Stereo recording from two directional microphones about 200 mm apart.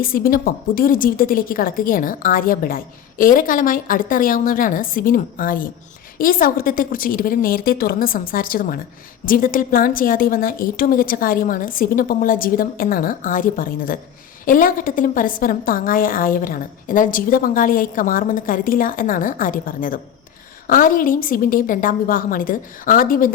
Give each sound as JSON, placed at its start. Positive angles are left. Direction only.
{"t": 0.0, "sound": "a woman's voice", "side_deg": 45}